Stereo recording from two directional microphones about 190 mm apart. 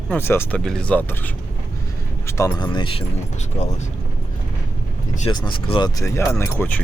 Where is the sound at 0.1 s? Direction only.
10° left (ahead or behind).